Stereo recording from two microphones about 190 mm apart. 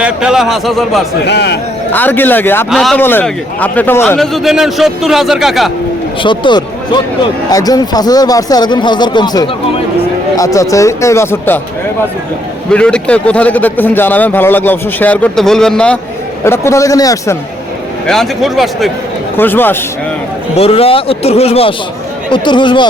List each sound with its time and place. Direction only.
0.0 s a man's voice: 5° right (ahead or behind)
1.2 s a man's voice: 60° left (ahead or behind)
1.9 s a man's voice: 10° left (ahead or behind)
4.2 s a man's voice: centre (ahead or behind)
6.2 s a man's voice: 25° left (ahead or behind)
12.7 s a man's voice: 5° left (ahead or behind)
18.0 s a man's voice: centre (ahead or behind)
19.4 s a man's voice: 10° left (ahead or behind)
20.6 s a man's voice: 30° left (ahead or behind)